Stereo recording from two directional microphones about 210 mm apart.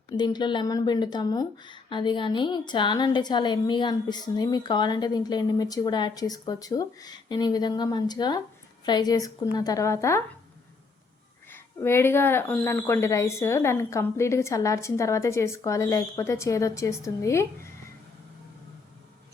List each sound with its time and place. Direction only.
0.2 s speech: 20° left (ahead or behind)
11.4 s speech: 10° left (ahead or behind)